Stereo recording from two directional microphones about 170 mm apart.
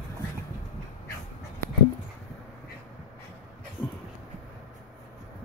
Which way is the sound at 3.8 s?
10° left (ahead or behind).